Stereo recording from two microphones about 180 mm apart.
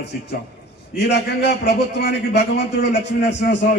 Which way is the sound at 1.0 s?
70° left (ahead or behind).